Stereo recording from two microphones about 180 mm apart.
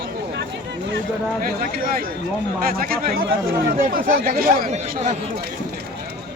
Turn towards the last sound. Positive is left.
turn(degrees=-40)  # may be behind; listen again after turning